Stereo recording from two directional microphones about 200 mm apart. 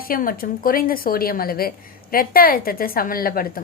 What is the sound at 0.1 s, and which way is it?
Speech, 45° left (ahead or behind).